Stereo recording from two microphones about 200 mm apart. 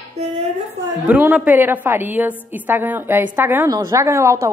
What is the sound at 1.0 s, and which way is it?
A woman's voice, 5° right (ahead or behind).